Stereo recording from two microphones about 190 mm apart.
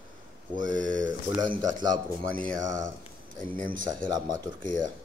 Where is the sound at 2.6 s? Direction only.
70° left (ahead or behind).